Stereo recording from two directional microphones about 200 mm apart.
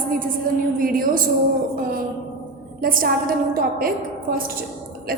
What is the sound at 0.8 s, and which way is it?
Speech, 45° right (ahead or behind).